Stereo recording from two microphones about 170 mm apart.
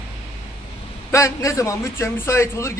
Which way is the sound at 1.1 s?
20° left (ahead or behind).